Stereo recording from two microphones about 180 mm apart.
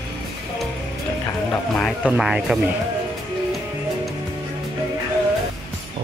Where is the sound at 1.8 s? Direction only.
Centre (ahead or behind).